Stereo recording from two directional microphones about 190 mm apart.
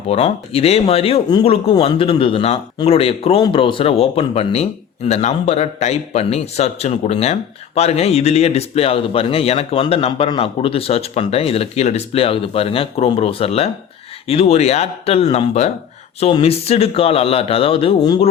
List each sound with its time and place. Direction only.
0.1 s speech: 30° left (ahead or behind)